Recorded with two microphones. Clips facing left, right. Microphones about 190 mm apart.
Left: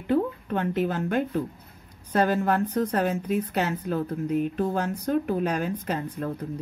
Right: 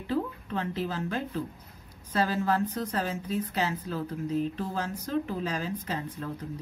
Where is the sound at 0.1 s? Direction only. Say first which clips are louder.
Left 6 dB; 60° left (ahead or behind).